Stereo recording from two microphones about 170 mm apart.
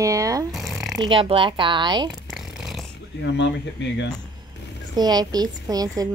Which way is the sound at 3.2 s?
90° left.